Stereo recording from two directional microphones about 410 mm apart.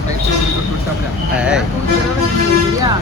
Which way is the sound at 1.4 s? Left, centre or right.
Centre.